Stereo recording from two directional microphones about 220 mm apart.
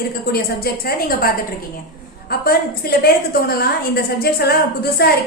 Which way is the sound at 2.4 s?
45° left (ahead or behind).